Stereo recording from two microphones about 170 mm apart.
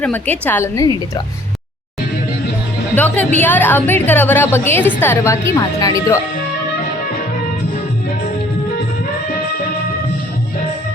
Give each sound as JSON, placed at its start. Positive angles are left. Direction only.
{"t": 0.0, "sound": "a woman's voice", "side_deg": 10}
{"t": 2.9, "sound": "a woman's voice", "side_deg": 10}